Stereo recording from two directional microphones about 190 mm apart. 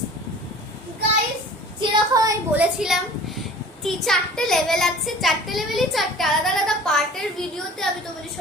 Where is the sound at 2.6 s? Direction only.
Centre (ahead or behind).